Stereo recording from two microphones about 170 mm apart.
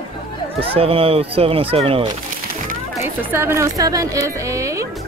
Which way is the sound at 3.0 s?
15° right (ahead or behind).